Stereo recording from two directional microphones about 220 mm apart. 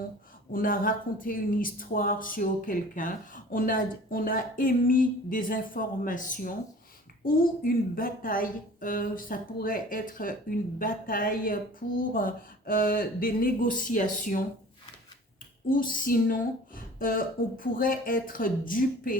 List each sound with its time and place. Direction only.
0.5 s speech: 40° left (ahead or behind)
15.7 s speech: 40° left (ahead or behind)